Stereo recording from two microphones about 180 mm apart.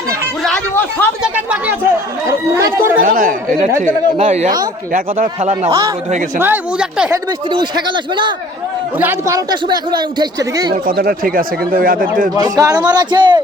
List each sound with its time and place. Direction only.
0.4 s a sound: 10° left (ahead or behind)
1.2 s a sound: 5° right (ahead or behind)
2.6 s speech: 20° right (ahead or behind)
3.0 s speech: 50° right (ahead or behind)
4.2 s a man's voice: 40° right (ahead or behind)
6.4 s speech: 5° right (ahead or behind)
7.1 s a man's voice: 25° right (ahead or behind)
9.0 s a man's voice: 15° right (ahead or behind)
10.8 s speech: 55° right (ahead or behind)
12.4 s a man's voice: 20° right (ahead or behind)